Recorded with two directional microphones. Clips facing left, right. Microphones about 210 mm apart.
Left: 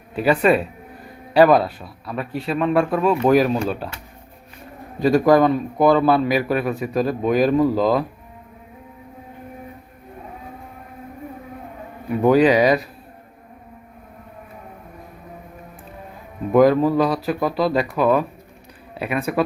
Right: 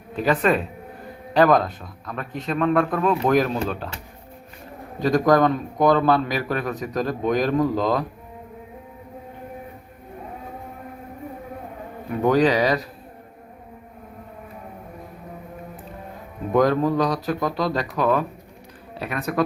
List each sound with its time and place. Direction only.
0.2 s a man's voice: 10° left (ahead or behind)
4.9 s a man's voice: 10° left (ahead or behind)
12.2 s a man's voice: 10° left (ahead or behind)
16.5 s a man's voice: 10° left (ahead or behind)